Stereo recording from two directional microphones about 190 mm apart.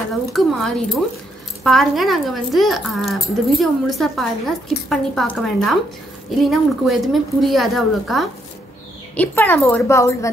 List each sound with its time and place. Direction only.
0.3 s a woman's voice: centre (ahead or behind)
9.8 s speech: 15° left (ahead or behind)